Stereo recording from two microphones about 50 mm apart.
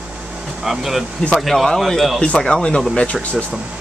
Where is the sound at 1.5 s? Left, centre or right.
Centre.